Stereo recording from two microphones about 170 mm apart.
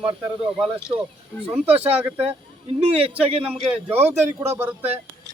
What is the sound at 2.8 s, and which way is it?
A man's voice, 35° right (ahead or behind).